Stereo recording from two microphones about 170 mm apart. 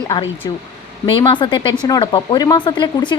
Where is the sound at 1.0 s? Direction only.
30° left (ahead or behind).